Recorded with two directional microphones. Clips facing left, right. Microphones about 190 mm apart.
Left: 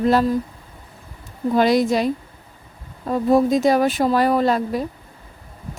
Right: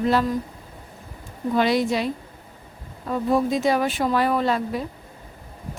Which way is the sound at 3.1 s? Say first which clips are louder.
Left 5 dB; 40° left (ahead or behind).